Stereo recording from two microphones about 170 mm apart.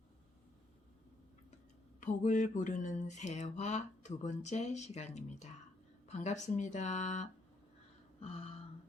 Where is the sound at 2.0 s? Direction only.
50° left (ahead or behind).